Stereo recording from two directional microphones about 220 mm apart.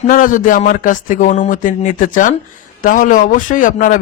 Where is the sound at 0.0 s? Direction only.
35° left (ahead or behind).